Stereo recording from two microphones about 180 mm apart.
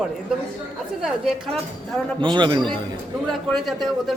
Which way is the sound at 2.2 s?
25° right (ahead or behind).